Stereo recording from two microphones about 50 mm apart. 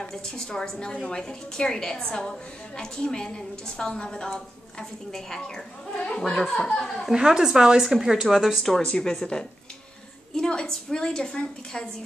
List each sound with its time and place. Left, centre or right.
0.1 s a woman's voice: centre
7.2 s a woman's voice: centre
8.8 s a woman's voice: centre